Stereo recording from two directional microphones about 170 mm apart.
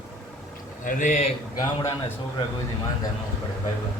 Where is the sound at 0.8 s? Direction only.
45° left (ahead or behind).